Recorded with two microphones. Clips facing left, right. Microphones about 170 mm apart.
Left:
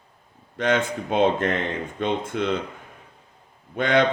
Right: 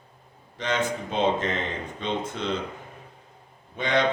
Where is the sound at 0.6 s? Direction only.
55° left (ahead or behind).